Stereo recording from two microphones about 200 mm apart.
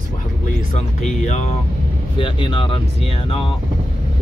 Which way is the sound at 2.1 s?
25° left (ahead or behind).